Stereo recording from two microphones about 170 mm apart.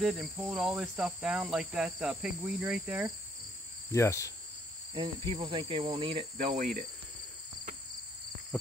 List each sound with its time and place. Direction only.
0.0 s cricket: centre (ahead or behind)
3.9 s cricket: 15° left (ahead or behind)
4.9 s insect: 25° right (ahead or behind)
6.3 s cricket: 50° right (ahead or behind)